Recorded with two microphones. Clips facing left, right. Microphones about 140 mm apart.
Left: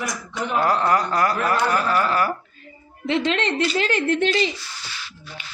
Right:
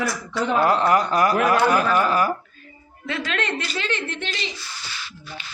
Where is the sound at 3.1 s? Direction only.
25° left (ahead or behind); by 4.4 s 45° left (ahead or behind).